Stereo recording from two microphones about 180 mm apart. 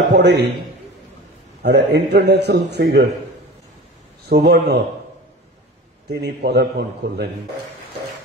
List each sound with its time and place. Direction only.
0.1 s a man's voice: 75° right (ahead or behind)
1.6 s a man's voice: 70° right (ahead or behind)
4.3 s speech: 65° right (ahead or behind)
6.0 s a man's voice: 70° right (ahead or behind)